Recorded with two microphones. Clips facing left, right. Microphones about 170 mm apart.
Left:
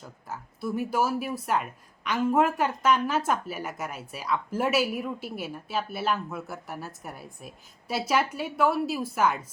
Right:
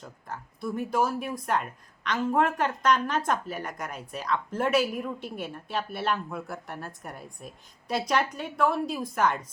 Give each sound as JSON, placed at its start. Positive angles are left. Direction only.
{"t": 0.3, "sound": "speech", "side_deg": 5}